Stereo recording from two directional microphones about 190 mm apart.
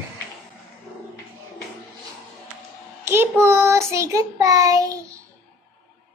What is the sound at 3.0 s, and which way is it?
A child's voice, 10° right (ahead or behind).